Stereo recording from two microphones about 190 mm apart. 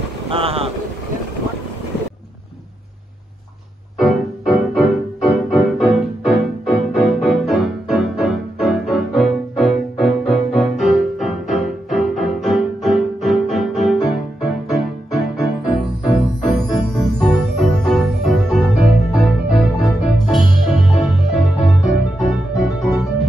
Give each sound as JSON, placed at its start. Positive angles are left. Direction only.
{"t": 0.3, "sound": "speech", "side_deg": -30}
{"t": 4.0, "sound": "music", "side_deg": 0}